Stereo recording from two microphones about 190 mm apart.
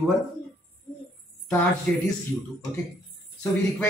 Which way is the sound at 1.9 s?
5° left (ahead or behind).